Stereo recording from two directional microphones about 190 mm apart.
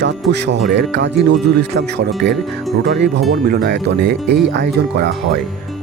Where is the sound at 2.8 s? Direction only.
60° right (ahead or behind).